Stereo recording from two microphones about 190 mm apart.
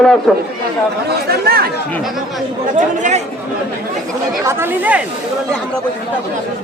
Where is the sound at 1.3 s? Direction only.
55° right (ahead or behind).